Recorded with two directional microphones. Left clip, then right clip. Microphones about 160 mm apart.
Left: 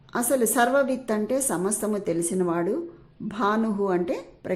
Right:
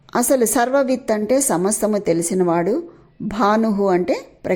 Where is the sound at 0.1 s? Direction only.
35° right (ahead or behind).